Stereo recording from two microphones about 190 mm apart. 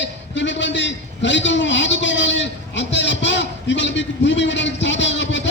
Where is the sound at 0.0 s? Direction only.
70° left (ahead or behind).